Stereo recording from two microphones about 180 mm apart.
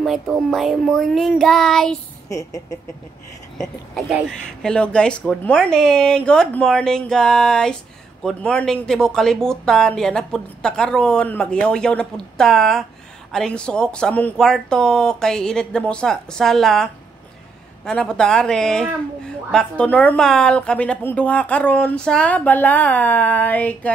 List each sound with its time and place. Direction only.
0.0 s speech: centre (ahead or behind)
2.2 s speech: 20° left (ahead or behind)
3.5 s a woman's voice: centre (ahead or behind)